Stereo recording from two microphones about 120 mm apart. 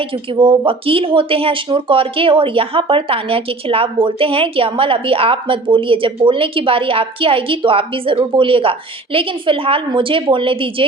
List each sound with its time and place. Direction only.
0.3 s speech: 45° right (ahead or behind)